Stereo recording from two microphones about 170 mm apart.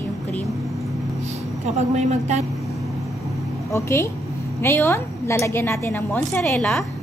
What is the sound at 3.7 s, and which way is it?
A woman's voice, 15° left (ahead or behind).